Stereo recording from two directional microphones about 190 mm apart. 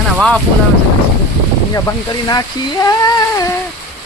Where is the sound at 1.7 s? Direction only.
20° left (ahead or behind).